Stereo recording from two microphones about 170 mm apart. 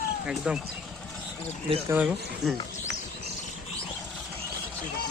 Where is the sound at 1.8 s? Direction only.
10° right (ahead or behind).